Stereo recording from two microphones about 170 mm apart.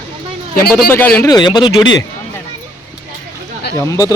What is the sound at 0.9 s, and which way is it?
Speech, 10° left (ahead or behind).